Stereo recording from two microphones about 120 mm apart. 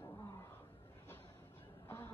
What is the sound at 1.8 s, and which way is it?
Honk, 20° left (ahead or behind).